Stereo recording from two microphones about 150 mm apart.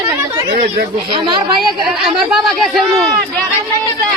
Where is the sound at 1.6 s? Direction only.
Centre (ahead or behind).